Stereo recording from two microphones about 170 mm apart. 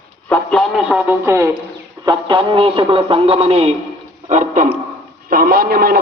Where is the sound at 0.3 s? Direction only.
Centre (ahead or behind).